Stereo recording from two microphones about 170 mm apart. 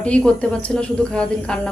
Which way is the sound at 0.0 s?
5° left (ahead or behind).